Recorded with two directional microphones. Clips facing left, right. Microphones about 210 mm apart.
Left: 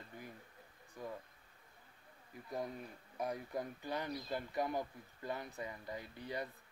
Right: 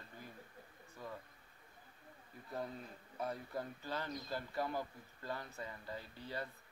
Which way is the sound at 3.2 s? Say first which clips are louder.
Left 2 dB; 15° left (ahead or behind).